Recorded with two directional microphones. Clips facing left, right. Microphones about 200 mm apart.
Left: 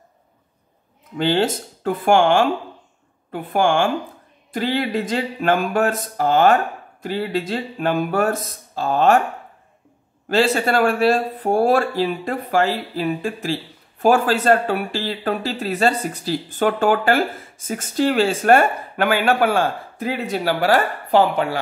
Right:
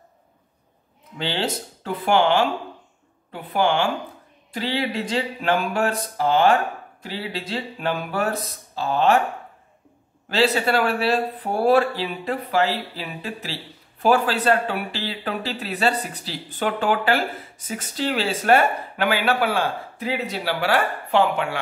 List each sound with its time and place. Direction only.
1.1 s speech: 50° left (ahead or behind)
10.3 s speech: 50° left (ahead or behind)